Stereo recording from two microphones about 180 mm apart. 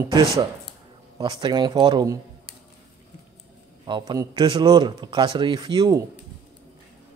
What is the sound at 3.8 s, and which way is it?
A man's voice, 25° right (ahead or behind).